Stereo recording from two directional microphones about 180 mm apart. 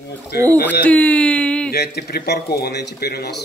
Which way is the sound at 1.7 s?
60° left (ahead or behind).